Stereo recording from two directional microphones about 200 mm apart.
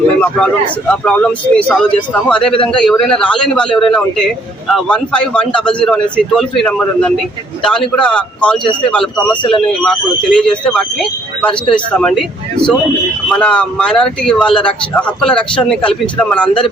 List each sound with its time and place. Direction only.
0.2 s a man's voice: 5° left (ahead or behind)